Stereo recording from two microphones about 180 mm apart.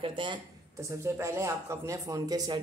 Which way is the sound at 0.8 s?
15° right (ahead or behind).